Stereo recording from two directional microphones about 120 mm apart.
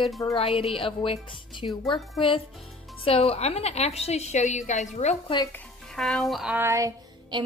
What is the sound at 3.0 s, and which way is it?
A woman's voice, 55° left (ahead or behind).